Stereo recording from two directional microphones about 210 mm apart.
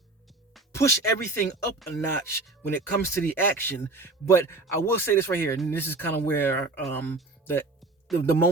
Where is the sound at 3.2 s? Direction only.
10° left (ahead or behind).